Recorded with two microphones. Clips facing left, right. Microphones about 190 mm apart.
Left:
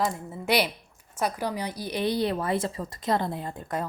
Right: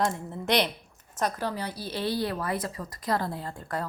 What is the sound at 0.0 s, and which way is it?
A woman's voice, 5° left (ahead or behind).